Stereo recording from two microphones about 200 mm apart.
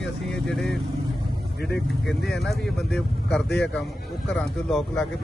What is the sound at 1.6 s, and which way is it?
Speech, 55° left (ahead or behind).